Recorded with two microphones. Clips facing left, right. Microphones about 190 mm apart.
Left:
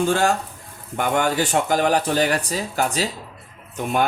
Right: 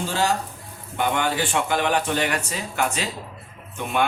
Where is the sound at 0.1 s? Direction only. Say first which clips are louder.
Left 4 dB; 55° left (ahead or behind).